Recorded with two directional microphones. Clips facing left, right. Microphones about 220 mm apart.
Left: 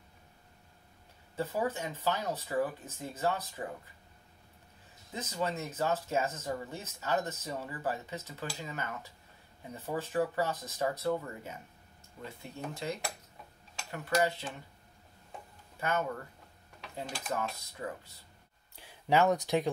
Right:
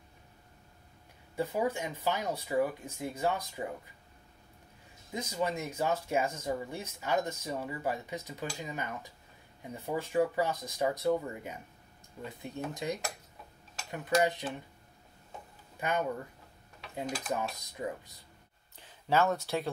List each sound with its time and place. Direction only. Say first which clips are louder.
1.3 s speech: right 2 dB; 10° right (ahead or behind)
5.1 s speech: right 2 dB; 10° right (ahead or behind)
15.8 s speech: right 1 dB; 15° right (ahead or behind)
16.9 s mechanisms: right 4 dB; centre (ahead or behind)
17.3 s speech: right 1 dB; 15° right (ahead or behind)
18.8 s speech: left 1 dB; 15° left (ahead or behind)